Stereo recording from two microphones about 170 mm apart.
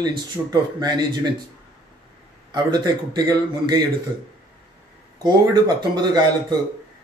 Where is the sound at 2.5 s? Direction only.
25° right (ahead or behind).